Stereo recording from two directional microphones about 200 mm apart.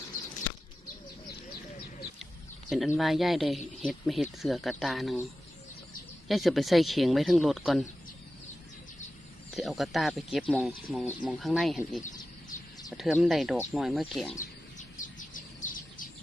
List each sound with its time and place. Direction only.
2.6 s speech: centre (ahead or behind)
6.2 s speech: centre (ahead or behind)
9.6 s speech: centre (ahead or behind)
14.3 s bird: 40° left (ahead or behind)